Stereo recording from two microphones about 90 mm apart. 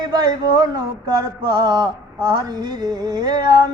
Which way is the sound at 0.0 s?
55° right (ahead or behind).